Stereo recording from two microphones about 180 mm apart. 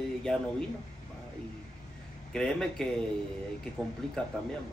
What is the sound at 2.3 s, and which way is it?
Speech, 5° left (ahead or behind).